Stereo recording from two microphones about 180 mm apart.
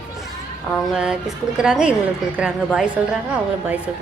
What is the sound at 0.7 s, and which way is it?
A woman's voice, centre (ahead or behind).